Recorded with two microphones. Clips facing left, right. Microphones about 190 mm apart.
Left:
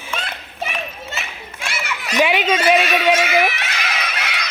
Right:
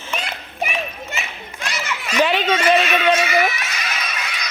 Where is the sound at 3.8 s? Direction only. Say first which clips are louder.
Left 2 dB; 80° left.